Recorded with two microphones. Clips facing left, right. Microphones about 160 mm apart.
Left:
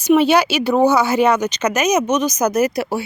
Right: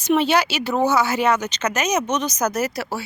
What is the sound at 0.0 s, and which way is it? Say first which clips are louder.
Speech: left 5 dB; 10° left (ahead or behind).